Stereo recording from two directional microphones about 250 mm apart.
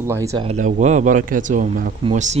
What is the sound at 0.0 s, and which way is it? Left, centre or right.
Speech, centre.